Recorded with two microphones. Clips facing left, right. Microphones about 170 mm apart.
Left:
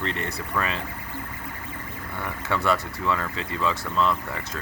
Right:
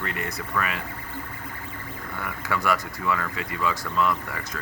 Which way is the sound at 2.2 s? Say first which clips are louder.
Left 1 dB; 25° left (ahead or behind).